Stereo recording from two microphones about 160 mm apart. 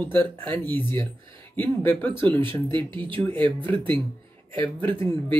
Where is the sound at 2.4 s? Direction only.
30° right (ahead or behind).